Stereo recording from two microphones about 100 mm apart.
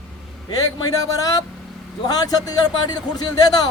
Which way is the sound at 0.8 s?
35° left (ahead or behind).